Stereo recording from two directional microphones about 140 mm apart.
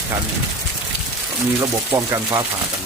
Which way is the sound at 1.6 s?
20° right (ahead or behind).